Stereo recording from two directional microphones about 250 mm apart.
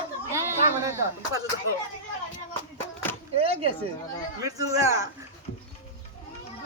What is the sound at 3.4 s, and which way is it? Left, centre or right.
Speech, right.